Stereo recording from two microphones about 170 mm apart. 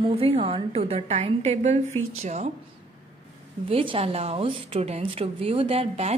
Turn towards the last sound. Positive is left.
turn(degrees=-40)  # may be behind; listen again after turning